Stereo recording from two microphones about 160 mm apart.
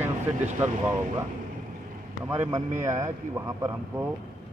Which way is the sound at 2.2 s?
15° right (ahead or behind).